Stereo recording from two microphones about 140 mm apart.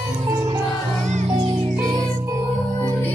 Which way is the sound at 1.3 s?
35° right (ahead or behind).